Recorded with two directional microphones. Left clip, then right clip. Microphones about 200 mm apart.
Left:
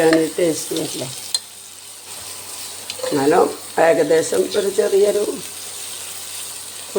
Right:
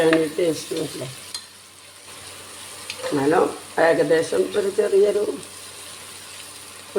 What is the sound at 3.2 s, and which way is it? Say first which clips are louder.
Speech: left 4 dB; 15° left (ahead or behind).